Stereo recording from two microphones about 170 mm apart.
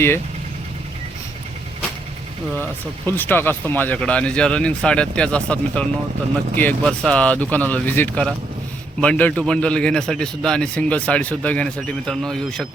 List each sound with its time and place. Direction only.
3.1 s speech: 10° left (ahead or behind)